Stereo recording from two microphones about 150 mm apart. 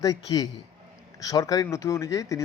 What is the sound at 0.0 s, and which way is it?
Speech, 25° left (ahead or behind).